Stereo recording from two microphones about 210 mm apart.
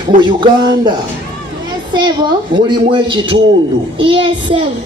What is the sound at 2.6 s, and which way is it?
Child singing, 25° right (ahead or behind).